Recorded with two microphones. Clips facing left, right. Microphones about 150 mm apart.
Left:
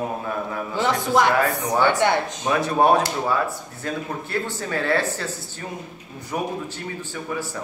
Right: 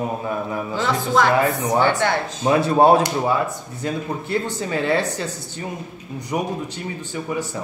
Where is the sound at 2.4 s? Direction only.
25° right (ahead or behind).